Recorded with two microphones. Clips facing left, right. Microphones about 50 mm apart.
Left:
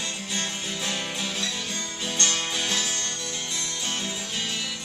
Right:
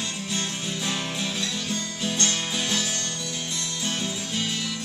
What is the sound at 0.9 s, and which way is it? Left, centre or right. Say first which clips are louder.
Music: right 1 dB; centre.